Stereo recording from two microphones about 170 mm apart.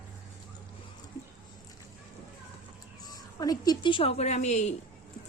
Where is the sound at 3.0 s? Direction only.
20° left (ahead or behind); by 4.7 s 40° left (ahead or behind).